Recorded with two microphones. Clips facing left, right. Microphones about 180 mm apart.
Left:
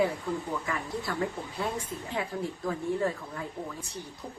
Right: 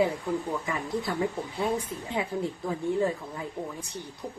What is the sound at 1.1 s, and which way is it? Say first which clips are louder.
A woman's voice: right 3 dB; 20° right (ahead or behind).